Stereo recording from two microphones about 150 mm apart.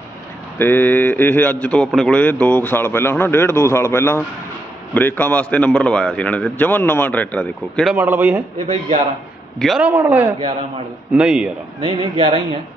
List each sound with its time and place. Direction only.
0.6 s a man's voice: 15° left (ahead or behind)
7.9 s a man's voice: 10° right (ahead or behind)
9.6 s a man's voice: centre (ahead or behind)
9.8 s a man's voice: 10° right (ahead or behind)
11.8 s a man's voice: 35° right (ahead or behind)